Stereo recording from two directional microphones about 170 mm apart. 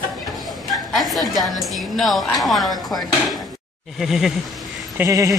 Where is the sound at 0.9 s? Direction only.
Centre (ahead or behind).